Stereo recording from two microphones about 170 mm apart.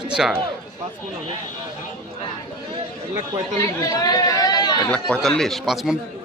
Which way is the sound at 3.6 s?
20° left (ahead or behind).